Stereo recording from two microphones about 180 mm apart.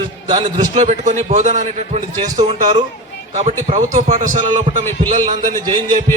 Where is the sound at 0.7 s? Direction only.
40° right (ahead or behind).